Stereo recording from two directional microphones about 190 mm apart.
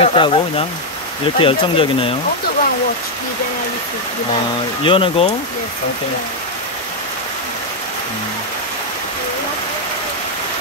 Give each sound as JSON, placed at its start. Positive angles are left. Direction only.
{"t": 0.0, "sound": "speech", "side_deg": 30}
{"t": 4.8, "sound": "speech", "side_deg": 25}